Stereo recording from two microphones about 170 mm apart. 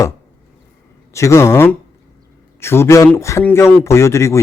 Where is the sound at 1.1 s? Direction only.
15° left (ahead or behind).